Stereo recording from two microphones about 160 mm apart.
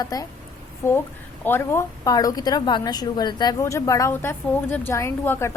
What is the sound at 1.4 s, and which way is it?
A woman's voice, 15° left (ahead or behind).